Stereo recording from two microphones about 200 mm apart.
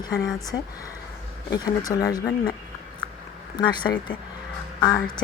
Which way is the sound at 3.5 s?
20° left (ahead or behind).